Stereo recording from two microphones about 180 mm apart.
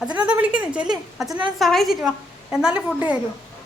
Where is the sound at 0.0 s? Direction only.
5° right (ahead or behind).